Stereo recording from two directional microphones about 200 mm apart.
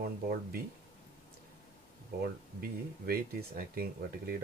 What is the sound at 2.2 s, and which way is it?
Speech, 50° right (ahead or behind).